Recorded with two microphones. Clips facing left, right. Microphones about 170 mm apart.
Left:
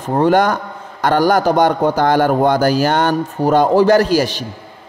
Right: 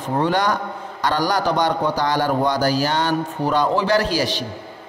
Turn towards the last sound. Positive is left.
turn(degrees=45)  # may be behind; listen again after turning